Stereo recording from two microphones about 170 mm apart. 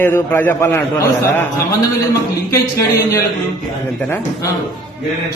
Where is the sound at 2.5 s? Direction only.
20° left (ahead or behind).